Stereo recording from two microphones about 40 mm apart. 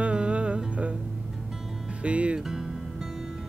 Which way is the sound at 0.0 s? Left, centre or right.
Right.